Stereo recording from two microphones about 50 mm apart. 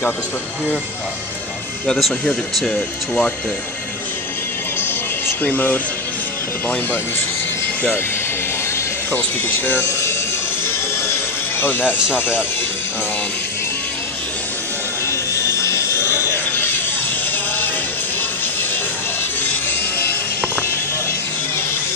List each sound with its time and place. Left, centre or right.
2.2 s speech: left
4.7 s music: left
5.4 s speech: left
9.1 s speech: left
9.8 s a sound: left
10.6 s music: left
12.2 s speech: left
15.0 s a sound: left
16.5 s a sound: left
18.4 s music: left